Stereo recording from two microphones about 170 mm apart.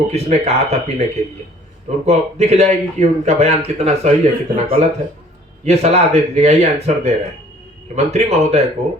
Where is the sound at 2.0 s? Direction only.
40° right (ahead or behind).